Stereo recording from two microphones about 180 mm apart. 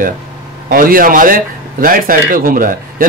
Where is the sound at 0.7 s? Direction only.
55° right (ahead or behind).